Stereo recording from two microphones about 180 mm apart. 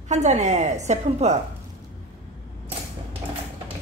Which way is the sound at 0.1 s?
40° right (ahead or behind).